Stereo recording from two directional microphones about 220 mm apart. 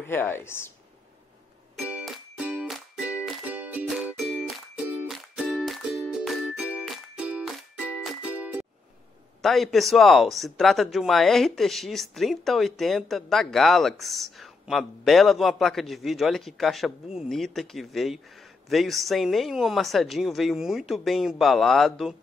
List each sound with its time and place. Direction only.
0.0 s speech: 10° left (ahead or behind)
1.8 s music: 5° right (ahead or behind)
9.4 s speech: centre (ahead or behind)